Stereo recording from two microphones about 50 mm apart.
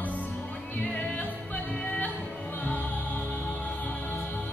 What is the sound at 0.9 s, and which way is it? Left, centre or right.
Music, left.